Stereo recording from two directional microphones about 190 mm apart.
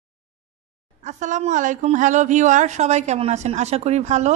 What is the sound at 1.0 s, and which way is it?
Speech, 40° right (ahead or behind).